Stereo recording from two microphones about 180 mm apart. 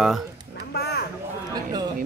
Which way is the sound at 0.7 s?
65° left (ahead or behind).